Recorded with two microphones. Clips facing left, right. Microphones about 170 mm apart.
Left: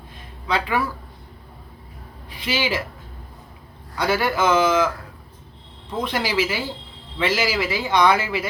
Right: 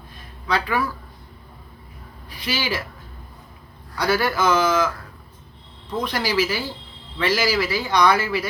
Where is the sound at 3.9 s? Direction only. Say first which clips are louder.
Even; 25° left (ahead or behind).